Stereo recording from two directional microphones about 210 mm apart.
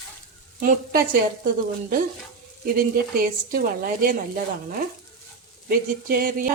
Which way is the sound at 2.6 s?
45° right (ahead or behind).